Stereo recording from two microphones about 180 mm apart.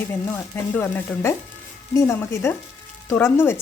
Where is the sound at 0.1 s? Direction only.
10° left (ahead or behind).